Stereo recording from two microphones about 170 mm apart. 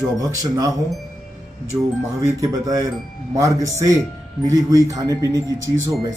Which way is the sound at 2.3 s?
20° right (ahead or behind).